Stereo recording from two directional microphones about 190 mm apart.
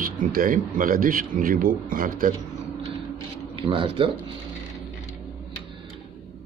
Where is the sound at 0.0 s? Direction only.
45° right (ahead or behind).